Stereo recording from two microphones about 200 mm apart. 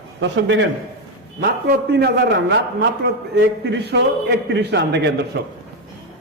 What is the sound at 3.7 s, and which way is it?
A man's voice, 60° right (ahead or behind).